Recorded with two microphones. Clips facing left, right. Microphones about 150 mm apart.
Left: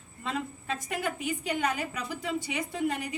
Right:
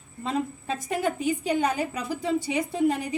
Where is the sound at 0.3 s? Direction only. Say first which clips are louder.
Right 5 dB; 35° right (ahead or behind).